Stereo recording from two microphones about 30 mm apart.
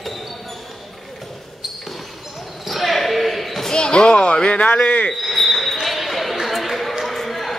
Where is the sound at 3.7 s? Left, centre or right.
Left.